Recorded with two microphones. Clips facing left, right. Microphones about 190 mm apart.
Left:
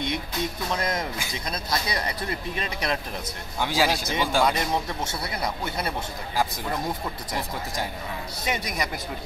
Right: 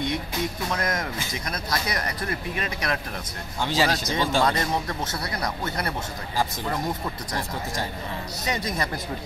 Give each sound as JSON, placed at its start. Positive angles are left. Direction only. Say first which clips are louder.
{"t": 0.7, "sound": "speech", "louder": "even", "side_deg": 25}
{"t": 3.6, "sound": "speech", "louder": "even", "side_deg": 10}
{"t": 8.5, "sound": "speech", "louder": "right 1 dB", "side_deg": 15}